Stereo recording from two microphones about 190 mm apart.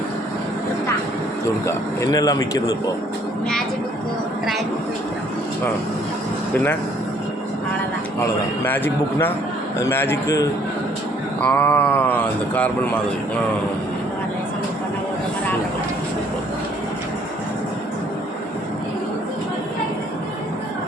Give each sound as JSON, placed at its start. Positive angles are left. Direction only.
{"t": 1.6, "sound": "a man's voice", "side_deg": 20}
{"t": 6.5, "sound": "speech", "side_deg": 10}
{"t": 8.2, "sound": "speech", "side_deg": 10}